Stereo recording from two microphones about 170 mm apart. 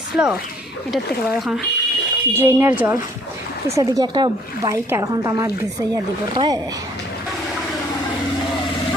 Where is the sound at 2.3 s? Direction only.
10° right (ahead or behind).